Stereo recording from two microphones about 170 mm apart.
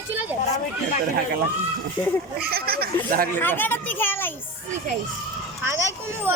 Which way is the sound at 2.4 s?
65° right (ahead or behind).